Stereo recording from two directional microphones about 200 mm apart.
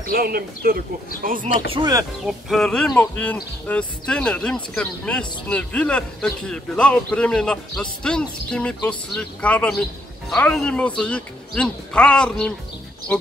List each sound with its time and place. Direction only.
0.1 s speech: 50° right (ahead or behind)
1.7 s speech: 20° right (ahead or behind)
2.2 s a man's voice: centre (ahead or behind)